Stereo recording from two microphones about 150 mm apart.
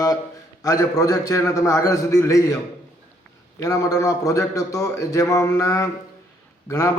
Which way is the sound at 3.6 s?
20° left (ahead or behind).